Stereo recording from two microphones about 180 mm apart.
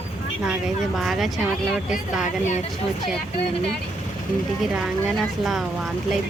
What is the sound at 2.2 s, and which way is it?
Speech, 40° left (ahead or behind).